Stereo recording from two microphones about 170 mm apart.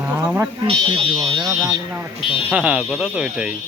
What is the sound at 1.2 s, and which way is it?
Speech, 20° right (ahead or behind).